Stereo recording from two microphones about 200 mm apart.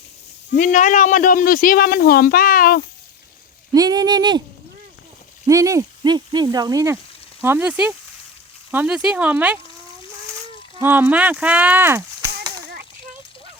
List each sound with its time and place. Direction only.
0.6 s speech: 40° left (ahead or behind)
3.7 s speech: 20° right (ahead or behind)
5.5 s speech: 15° right (ahead or behind)
10.8 s speech: 10° right (ahead or behind)